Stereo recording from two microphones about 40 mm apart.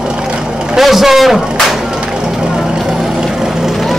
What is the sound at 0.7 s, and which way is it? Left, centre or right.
Speech, centre.